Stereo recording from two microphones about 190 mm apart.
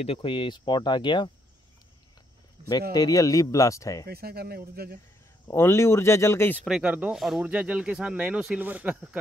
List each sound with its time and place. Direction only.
0.0 s speech: 30° left (ahead or behind)
2.9 s speech: 20° left (ahead or behind)
4.1 s speech: 55° right (ahead or behind)
5.5 s speech: 15° left (ahead or behind)
6.6 s speech: 5° right (ahead or behind)